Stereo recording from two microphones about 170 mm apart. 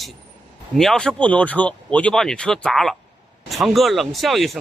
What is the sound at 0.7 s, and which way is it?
A man's voice, 5° left (ahead or behind).